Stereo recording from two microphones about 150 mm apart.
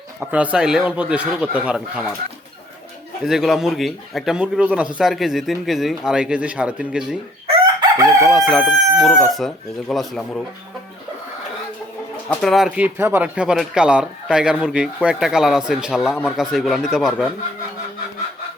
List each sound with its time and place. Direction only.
0.2 s speech: 10° right (ahead or behind)
3.2 s speech: centre (ahead or behind)
7.4 s chicken: 40° right (ahead or behind)
8.0 s speech: centre (ahead or behind)
12.3 s speech: 5° left (ahead or behind)